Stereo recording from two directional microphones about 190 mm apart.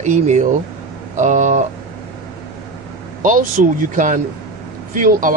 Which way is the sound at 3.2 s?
45° right (ahead or behind).